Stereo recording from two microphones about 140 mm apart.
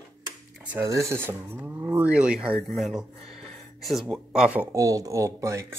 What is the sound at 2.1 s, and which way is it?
Speech, 5° right (ahead or behind).